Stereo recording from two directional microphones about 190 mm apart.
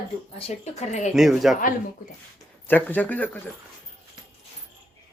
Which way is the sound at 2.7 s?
10° left (ahead or behind).